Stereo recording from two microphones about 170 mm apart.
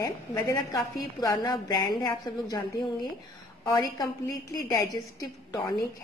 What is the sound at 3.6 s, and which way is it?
A woman's voice, 25° left (ahead or behind).